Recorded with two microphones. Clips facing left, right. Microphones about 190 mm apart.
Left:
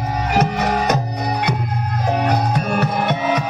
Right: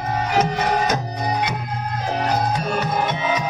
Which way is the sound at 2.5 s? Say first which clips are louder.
Left 3 dB; 65° left (ahead or behind).